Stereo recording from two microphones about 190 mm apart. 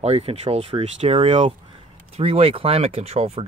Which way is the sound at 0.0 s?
30° right (ahead or behind).